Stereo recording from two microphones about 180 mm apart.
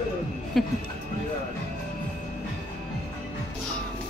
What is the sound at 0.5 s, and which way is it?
Speech, centre (ahead or behind).